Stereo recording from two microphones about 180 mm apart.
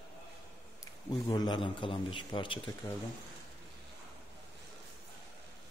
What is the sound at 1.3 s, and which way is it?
A man's voice, 25° left (ahead or behind).